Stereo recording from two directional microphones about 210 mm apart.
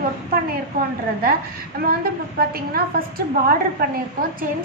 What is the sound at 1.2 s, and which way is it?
A woman's voice, 45° right (ahead or behind).